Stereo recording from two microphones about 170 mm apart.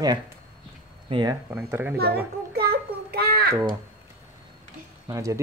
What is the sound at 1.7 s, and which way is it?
Speech, 10° right (ahead or behind).